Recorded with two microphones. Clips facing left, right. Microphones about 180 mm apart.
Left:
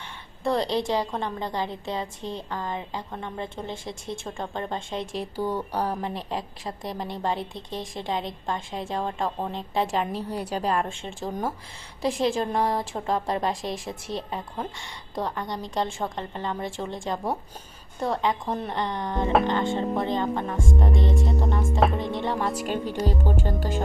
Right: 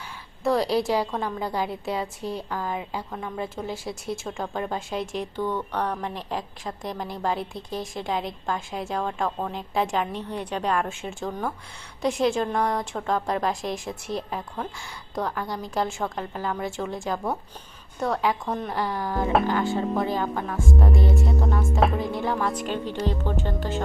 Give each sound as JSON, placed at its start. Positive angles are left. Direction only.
{"t": 0.4, "sound": "a woman's voice", "side_deg": -5}
{"t": 5.4, "sound": "speech", "side_deg": 10}
{"t": 6.0, "sound": "a woman's voice", "side_deg": 0}
{"t": 11.3, "sound": "speech", "side_deg": 20}
{"t": 12.0, "sound": "a woman's voice", "side_deg": 0}
{"t": 22.4, "sound": "speech", "side_deg": 10}